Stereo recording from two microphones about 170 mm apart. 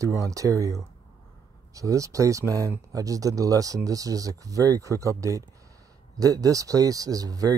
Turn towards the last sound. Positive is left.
turn(degrees=-20)  # may be behind; listen again after turning